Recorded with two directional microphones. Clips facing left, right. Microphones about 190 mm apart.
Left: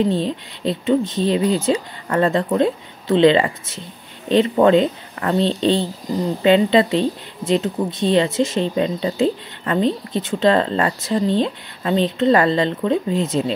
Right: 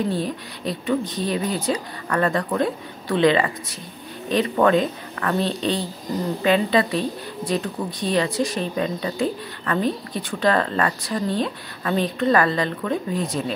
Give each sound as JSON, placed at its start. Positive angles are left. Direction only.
{"t": 0.1, "sound": "speech", "side_deg": 25}